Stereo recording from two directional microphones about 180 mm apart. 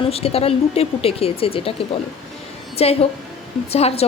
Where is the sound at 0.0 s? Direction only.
35° left (ahead or behind).